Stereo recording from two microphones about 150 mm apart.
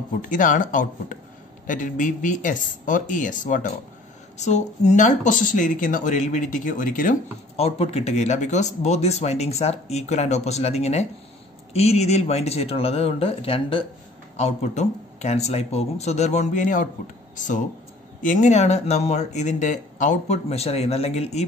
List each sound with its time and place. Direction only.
0.2 s speech: 60° left (ahead or behind)
7.5 s speech: 40° left (ahead or behind)
14.3 s speech: 50° left (ahead or behind)